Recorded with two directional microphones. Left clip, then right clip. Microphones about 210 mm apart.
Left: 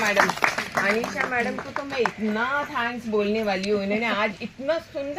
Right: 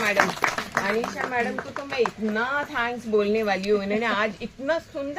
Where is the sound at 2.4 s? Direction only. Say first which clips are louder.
Right 1 dB; 15° left (ahead or behind).